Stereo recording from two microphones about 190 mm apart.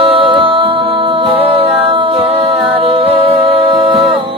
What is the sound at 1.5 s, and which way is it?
A capella, 30° right (ahead or behind).